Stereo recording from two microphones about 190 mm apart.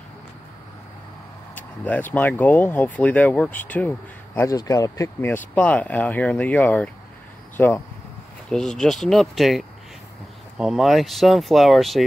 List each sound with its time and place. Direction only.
1.5 s speech: 10° left (ahead or behind)